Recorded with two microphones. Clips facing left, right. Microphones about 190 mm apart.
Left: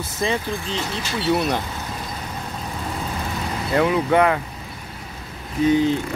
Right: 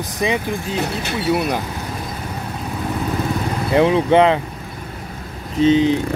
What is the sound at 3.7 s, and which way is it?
Speech, 25° right (ahead or behind).